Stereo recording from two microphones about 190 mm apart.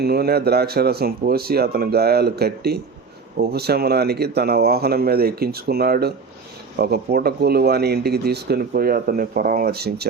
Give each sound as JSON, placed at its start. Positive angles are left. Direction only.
{"t": 0.0, "sound": "speech", "side_deg": -55}